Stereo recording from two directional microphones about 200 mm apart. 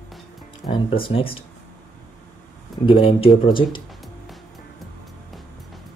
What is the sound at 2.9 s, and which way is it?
Speech, 30° left (ahead or behind).